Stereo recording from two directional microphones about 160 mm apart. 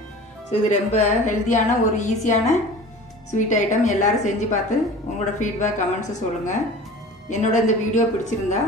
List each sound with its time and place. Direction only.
0.5 s a woman's voice: 45° left (ahead or behind)